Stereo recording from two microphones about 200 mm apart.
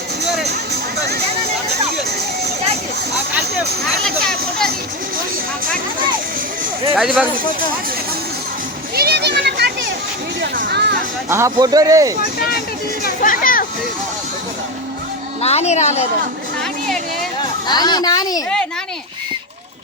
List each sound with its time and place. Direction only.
4.0 s speech: 5° left (ahead or behind)
6.9 s speech: centre (ahead or behind)
9.0 s a sound: 55° right (ahead or behind)
10.6 s speech: 55° right (ahead or behind)
11.3 s a man's voice: 15° right (ahead or behind)
13.2 s a sound: 45° left (ahead or behind)
15.4 s a woman's voice: 30° left (ahead or behind)
17.7 s a woman's voice: 20° left (ahead or behind)